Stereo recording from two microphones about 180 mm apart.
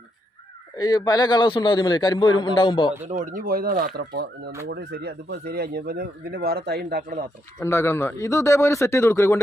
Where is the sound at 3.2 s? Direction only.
50° right (ahead or behind).